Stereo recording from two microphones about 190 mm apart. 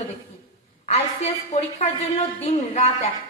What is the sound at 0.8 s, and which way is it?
A woman's voice, 35° left (ahead or behind).